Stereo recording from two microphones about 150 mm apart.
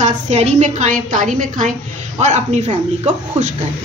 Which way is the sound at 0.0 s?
50° right (ahead or behind).